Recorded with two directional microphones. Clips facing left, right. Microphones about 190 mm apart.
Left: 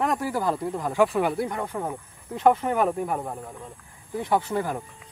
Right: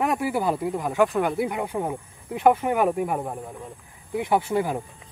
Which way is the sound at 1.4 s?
10° right (ahead or behind).